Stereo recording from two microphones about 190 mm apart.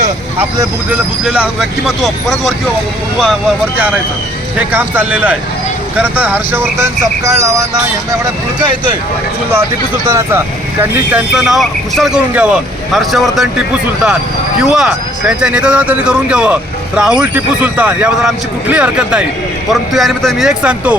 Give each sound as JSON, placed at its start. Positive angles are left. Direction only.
{"t": 0.3, "sound": "speech", "side_deg": -10}
{"t": 3.8, "sound": "speech", "side_deg": -5}
{"t": 10.1, "sound": "speech", "side_deg": -15}
{"t": 11.1, "sound": "speech", "side_deg": 0}
{"t": 14.6, "sound": "speech", "side_deg": -5}